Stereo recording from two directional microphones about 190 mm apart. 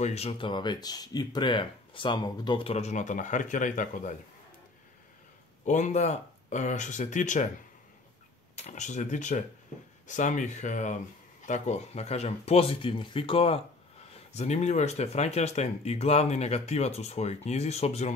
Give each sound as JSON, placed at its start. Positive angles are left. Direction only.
{"t": 0.0, "sound": "speech", "side_deg": 35}
{"t": 5.7, "sound": "speech", "side_deg": 40}
{"t": 8.5, "sound": "speech", "side_deg": 40}